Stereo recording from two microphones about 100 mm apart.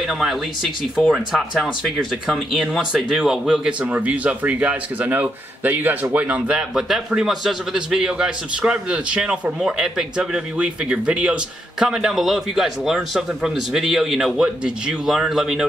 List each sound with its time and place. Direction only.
0.9 s a man's voice: centre (ahead or behind)